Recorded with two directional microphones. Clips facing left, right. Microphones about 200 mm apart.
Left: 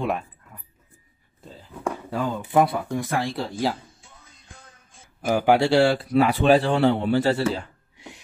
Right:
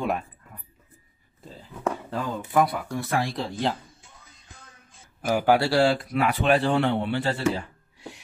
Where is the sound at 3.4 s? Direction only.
5° left (ahead or behind).